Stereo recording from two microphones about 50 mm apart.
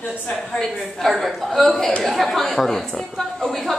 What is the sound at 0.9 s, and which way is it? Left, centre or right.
A woman's voice, centre.